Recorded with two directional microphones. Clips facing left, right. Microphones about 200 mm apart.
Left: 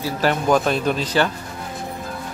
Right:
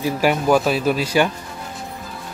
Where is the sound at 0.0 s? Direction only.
10° right (ahead or behind).